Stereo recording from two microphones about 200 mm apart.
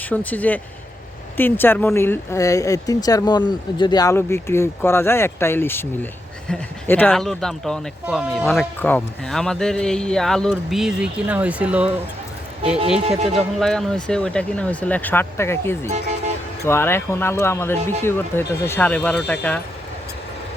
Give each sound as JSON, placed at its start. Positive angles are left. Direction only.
{"t": 0.1, "sound": "speech", "side_deg": 10}
{"t": 13.1, "sound": "speech", "side_deg": -30}
{"t": 13.6, "sound": "speech", "side_deg": 0}